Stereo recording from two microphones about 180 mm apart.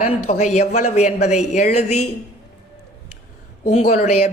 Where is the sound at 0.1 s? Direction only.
35° left (ahead or behind).